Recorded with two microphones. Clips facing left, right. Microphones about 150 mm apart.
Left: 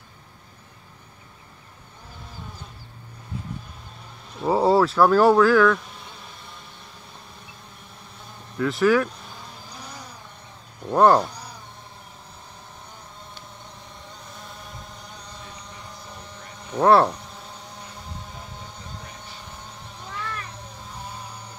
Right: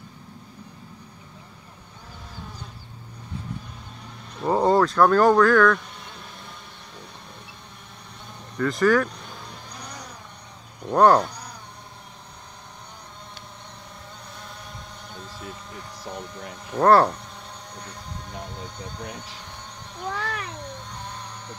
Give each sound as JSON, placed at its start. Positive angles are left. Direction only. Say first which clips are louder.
{"t": 4.4, "sound": "insect", "louder": "left 1 dB", "side_deg": 5}
{"t": 8.5, "sound": "vehicle", "louder": "even", "side_deg": 5}
{"t": 10.8, "sound": "cat", "louder": "even", "side_deg": 0}
{"t": 15.1, "sound": "a sound", "louder": "right 3 dB", "side_deg": 0}
{"t": 16.6, "sound": "speech", "louder": "even", "side_deg": 0}
{"t": 17.7, "sound": "music", "louder": "right 1 dB", "side_deg": 0}
{"t": 18.6, "sound": "vehicle", "louder": "right 4 dB", "side_deg": 0}
{"t": 20.1, "sound": "cat", "louder": "right 4 dB", "side_deg": -90}
{"t": 20.8, "sound": "a sound", "louder": "even", "side_deg": 5}